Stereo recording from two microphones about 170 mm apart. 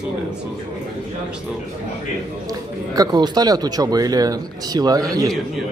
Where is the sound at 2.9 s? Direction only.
20° right (ahead or behind).